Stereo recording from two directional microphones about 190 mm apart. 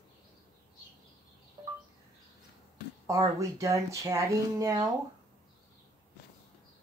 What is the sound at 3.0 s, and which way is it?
Speech, 15° right (ahead or behind).